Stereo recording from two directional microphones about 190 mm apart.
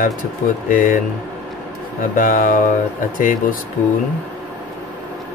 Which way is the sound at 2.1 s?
45° left (ahead or behind).